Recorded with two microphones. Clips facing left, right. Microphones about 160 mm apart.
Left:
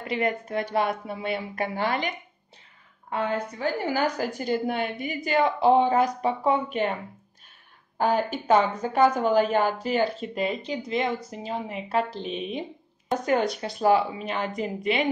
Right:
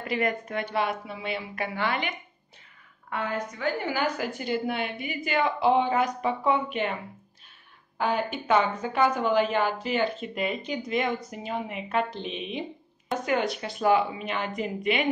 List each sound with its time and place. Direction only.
0.0 s a woman's voice: 25° left (ahead or behind)
3.1 s a woman's voice: 30° left (ahead or behind)
8.0 s a woman's voice: 40° left (ahead or behind)